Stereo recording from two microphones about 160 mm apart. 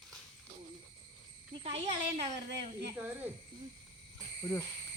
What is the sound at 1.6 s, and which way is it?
Speech, 40° right (ahead or behind).